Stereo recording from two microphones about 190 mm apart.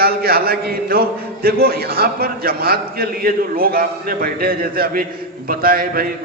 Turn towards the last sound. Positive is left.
turn(degrees=-50)  # may be behind; listen again after turning